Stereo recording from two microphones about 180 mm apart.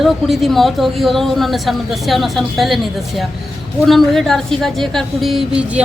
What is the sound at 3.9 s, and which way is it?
A woman's voice, centre (ahead or behind).